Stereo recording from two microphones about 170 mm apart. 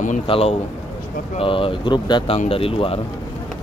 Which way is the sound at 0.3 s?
35° left (ahead or behind).